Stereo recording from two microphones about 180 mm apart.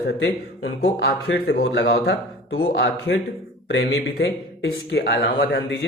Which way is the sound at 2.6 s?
75° left (ahead or behind).